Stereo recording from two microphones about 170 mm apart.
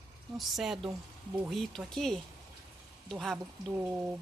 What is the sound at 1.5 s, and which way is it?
Speech, centre (ahead or behind).